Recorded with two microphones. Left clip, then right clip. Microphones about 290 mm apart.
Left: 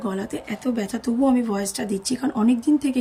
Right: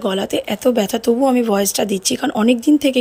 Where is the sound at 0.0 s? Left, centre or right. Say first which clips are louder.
Right 10 dB; centre.